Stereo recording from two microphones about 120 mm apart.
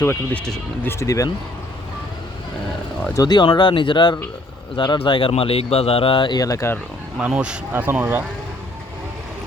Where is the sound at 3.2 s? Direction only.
35° left (ahead or behind).